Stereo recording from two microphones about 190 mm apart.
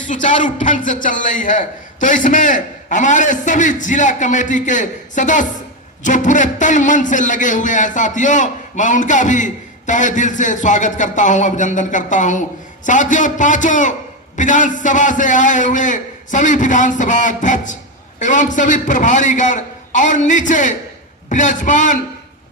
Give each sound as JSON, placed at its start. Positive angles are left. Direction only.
{"t": 0.1, "sound": "a man's voice", "side_deg": 40}